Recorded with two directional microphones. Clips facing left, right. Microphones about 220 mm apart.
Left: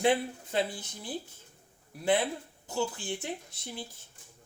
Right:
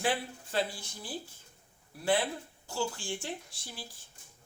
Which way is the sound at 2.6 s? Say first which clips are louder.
Left 2 dB; 20° left (ahead or behind).